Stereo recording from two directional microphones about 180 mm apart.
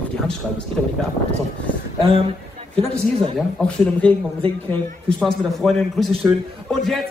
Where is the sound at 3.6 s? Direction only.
5° left (ahead or behind).